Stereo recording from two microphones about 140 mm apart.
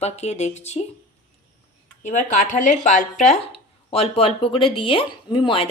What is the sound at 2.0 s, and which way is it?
Speech, 60° left (ahead or behind).